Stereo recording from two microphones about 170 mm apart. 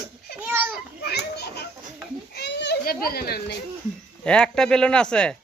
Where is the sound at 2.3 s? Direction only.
85° left; by 3.6 s 65° left (ahead or behind).